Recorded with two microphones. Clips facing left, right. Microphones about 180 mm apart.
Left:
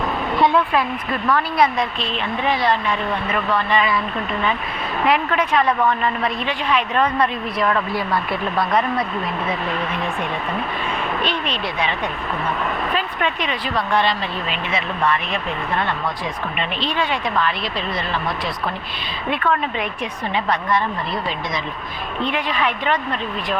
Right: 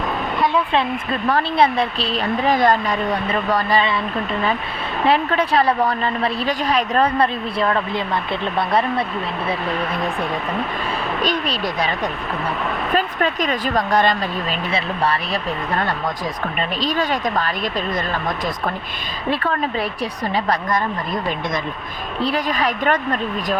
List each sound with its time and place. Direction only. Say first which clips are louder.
0.7 s speech: right 1 dB; 25° right (ahead or behind)
5.0 s speech: right 2 dB; 30° right (ahead or behind)
19.3 s speech: even; 35° right (ahead or behind)